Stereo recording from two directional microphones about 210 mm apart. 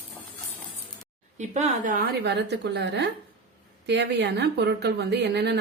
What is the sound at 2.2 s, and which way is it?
A woman's voice, 55° right (ahead or behind).